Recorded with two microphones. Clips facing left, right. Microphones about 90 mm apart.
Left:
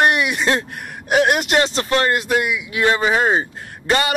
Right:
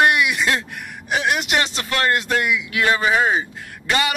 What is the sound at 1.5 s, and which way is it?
Speech, 35° left (ahead or behind).